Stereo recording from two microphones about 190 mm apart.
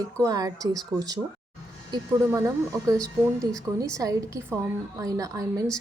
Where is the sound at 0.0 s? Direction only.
20° right (ahead or behind).